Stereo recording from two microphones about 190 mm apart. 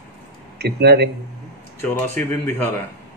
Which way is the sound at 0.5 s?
60° right (ahead or behind).